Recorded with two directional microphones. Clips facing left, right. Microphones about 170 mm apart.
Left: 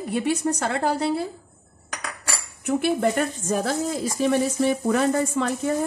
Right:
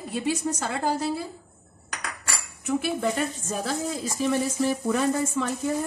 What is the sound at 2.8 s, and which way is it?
A woman's voice, 60° left (ahead or behind).